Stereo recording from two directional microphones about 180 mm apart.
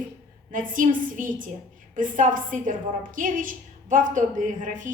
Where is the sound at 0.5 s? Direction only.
45° right (ahead or behind).